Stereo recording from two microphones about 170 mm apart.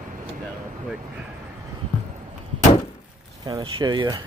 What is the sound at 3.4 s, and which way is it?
Speech, 25° right (ahead or behind).